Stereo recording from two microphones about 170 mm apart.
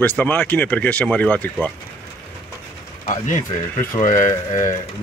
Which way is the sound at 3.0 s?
50° left (ahead or behind).